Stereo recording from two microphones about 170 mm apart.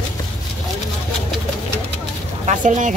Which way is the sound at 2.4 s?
50° right (ahead or behind).